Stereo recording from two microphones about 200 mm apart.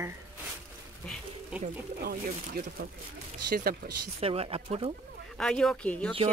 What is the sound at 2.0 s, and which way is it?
Speech, 50° right (ahead or behind).